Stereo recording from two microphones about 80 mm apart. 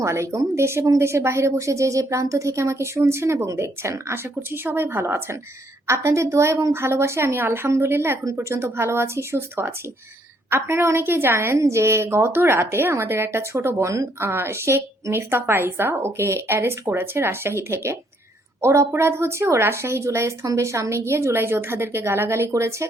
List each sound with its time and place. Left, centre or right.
0.0 s a woman's voice: right